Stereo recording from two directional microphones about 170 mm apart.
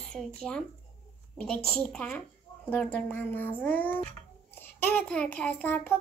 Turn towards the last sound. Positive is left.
turn(degrees=10)  # may be behind; listen again after turning